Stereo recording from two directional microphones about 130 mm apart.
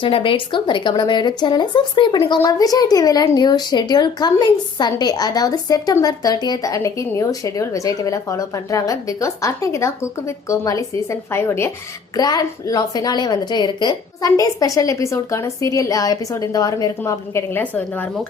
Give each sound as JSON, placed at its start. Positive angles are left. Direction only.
{"t": 0.0, "sound": "speech", "side_deg": 40}
{"t": 12.1, "sound": "speech", "side_deg": 30}